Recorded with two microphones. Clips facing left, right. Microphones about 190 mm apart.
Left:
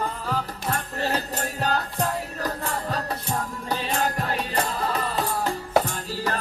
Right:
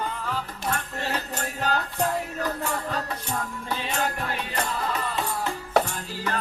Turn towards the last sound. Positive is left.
turn(degrees=35)  # may be behind; listen again after turning